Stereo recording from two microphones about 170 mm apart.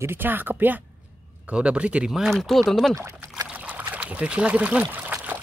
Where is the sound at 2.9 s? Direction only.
15° right (ahead or behind).